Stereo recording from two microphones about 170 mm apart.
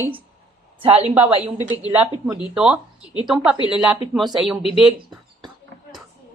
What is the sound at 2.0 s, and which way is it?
Speech, 5° right (ahead or behind).